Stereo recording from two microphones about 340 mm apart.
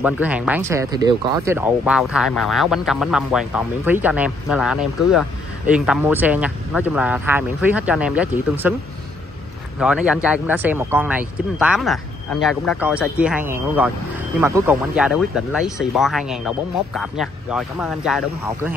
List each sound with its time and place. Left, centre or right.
0.0 s speech: centre
9.8 s speech: centre